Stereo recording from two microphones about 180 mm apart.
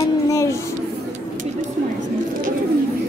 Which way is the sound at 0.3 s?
15° left (ahead or behind).